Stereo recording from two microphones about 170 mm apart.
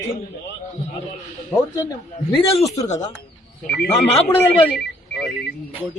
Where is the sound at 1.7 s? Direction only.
20° left (ahead or behind).